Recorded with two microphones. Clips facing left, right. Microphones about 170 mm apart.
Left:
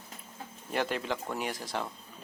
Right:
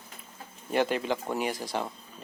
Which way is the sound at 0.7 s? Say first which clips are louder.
Right 5 dB; centre (ahead or behind).